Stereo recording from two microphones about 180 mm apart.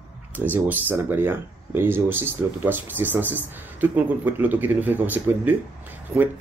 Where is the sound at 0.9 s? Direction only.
10° right (ahead or behind).